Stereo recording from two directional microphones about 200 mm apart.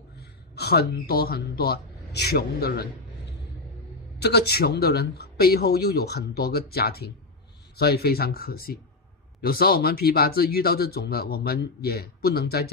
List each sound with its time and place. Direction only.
0.2 s speech: 55° left (ahead or behind)
4.2 s speech: 55° left (ahead or behind)